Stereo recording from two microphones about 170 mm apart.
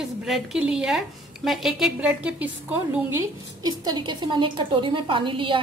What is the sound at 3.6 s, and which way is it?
A woman's voice, 25° right (ahead or behind).